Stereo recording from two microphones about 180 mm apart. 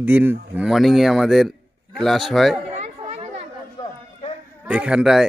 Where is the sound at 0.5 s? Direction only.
Centre (ahead or behind).